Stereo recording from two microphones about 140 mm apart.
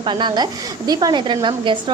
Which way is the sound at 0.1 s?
35° right (ahead or behind).